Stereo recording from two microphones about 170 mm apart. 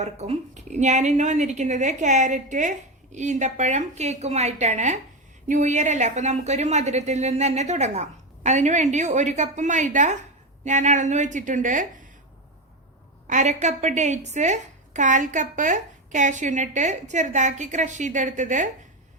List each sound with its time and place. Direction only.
0.0 s a woman's voice: 40° right (ahead or behind)
13.2 s a woman's voice: 45° right (ahead or behind)